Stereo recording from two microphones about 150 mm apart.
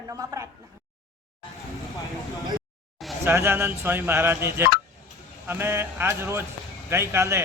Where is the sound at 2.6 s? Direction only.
Centre (ahead or behind).